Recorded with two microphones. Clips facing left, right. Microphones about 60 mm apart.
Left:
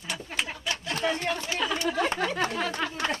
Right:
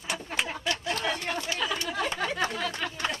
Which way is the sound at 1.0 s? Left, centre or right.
Left.